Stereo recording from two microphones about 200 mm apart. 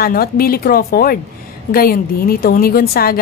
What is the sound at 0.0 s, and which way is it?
A woman's voice, 50° left (ahead or behind).